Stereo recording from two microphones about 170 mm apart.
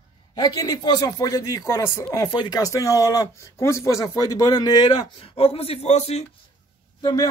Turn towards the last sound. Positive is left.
turn(degrees=25)  # may be behind; listen again after turning